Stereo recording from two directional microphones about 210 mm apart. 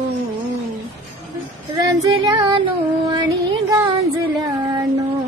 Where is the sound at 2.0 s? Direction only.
20° right (ahead or behind).